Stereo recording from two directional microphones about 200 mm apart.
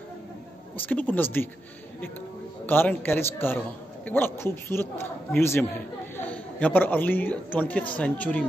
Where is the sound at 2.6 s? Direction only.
10° left (ahead or behind).